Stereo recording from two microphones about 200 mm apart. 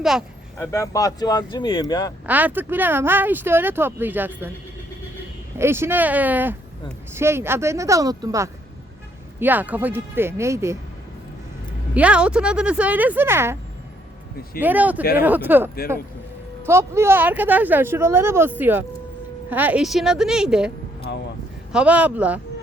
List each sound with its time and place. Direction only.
0.0 s speech: centre (ahead or behind)
0.5 s speech: 15° left (ahead or behind)
2.2 s speech: 10° right (ahead or behind)
5.5 s speech: 10° right (ahead or behind)
11.9 s speech: 5° right (ahead or behind)
14.6 s speech: 10° right (ahead or behind)